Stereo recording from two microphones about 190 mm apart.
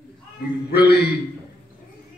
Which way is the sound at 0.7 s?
60° left (ahead or behind).